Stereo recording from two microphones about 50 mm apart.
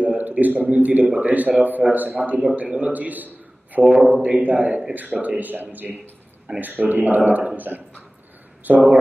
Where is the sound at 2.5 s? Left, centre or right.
Right.